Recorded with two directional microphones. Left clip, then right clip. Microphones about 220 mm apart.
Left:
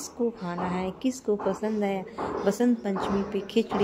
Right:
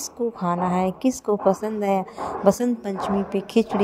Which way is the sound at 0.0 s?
30° right (ahead or behind).